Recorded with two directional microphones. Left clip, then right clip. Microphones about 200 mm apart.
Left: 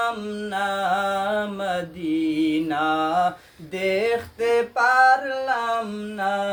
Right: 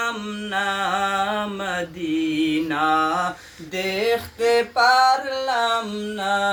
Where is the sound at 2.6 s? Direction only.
50° left (ahead or behind).